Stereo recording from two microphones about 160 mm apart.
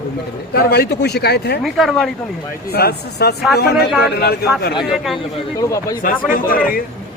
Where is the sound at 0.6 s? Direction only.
75° left (ahead or behind).